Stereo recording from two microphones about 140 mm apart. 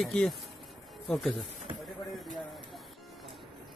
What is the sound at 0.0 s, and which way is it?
Speech, 5° left (ahead or behind).